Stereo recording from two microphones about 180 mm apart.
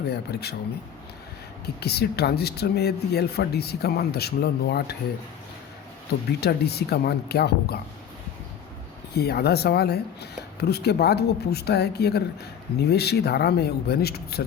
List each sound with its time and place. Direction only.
0.1 s speech: 65° left (ahead or behind)
1.6 s speech: 60° left (ahead or behind)
6.4 s speech: 65° left (ahead or behind)
9.1 s speech: 60° left (ahead or behind)